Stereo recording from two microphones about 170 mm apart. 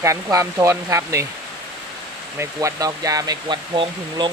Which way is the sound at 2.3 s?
15° right (ahead or behind).